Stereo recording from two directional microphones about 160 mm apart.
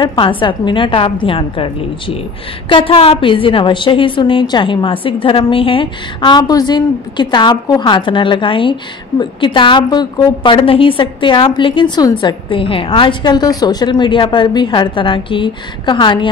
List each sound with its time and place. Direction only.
0.0 s a woman's voice: 30° left (ahead or behind)